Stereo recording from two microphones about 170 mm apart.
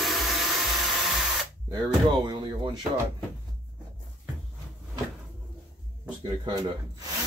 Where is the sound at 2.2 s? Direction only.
25° right (ahead or behind).